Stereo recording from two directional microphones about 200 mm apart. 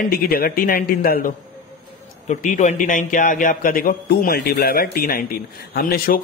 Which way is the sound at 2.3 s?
40° left (ahead or behind).